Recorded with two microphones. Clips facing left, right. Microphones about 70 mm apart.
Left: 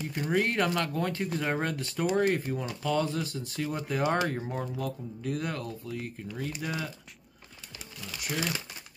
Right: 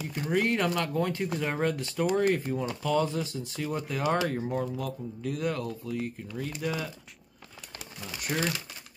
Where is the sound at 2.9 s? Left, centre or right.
Centre.